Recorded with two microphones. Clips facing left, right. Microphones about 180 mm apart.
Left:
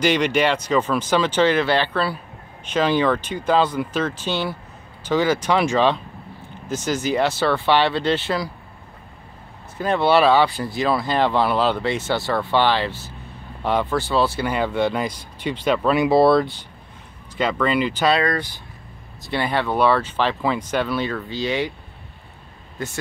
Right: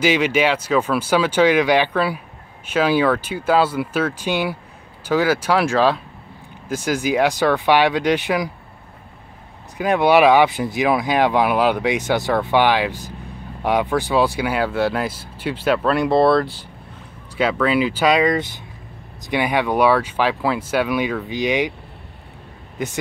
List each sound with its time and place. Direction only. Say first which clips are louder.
0.0 s speech: right 1 dB; 5° right (ahead or behind)
9.8 s speech: right 3 dB; 15° right (ahead or behind)
22.8 s speech: right 4 dB; 20° right (ahead or behind)